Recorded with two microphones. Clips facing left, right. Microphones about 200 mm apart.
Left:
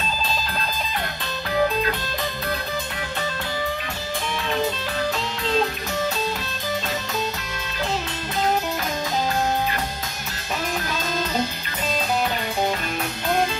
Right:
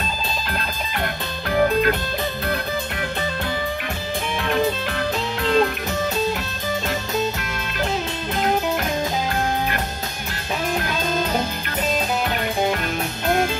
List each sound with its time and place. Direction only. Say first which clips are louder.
1.5 s music: right 4 dB; 60° right (ahead or behind)
4.5 s music: right 4 dB; 60° right (ahead or behind)